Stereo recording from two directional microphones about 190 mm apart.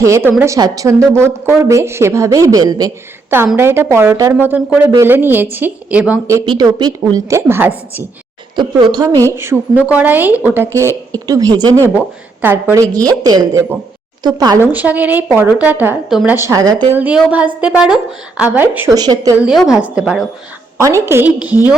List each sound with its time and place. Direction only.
0.0 s a woman's voice: 15° right (ahead or behind)
8.5 s a woman's voice: 25° right (ahead or behind)
9.3 s a woman's voice: 15° right (ahead or behind)
16.9 s a woman's voice: 5° right (ahead or behind)
19.4 s a woman's voice: 5° right (ahead or behind)